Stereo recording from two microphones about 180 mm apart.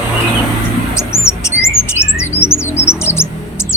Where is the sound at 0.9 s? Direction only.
15° left (ahead or behind).